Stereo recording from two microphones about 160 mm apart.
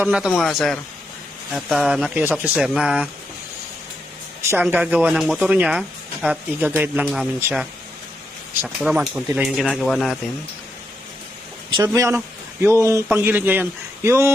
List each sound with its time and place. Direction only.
0.0 s speech: 5° right (ahead or behind)
4.4 s speech: 10° right (ahead or behind)
11.7 s speech: 20° right (ahead or behind)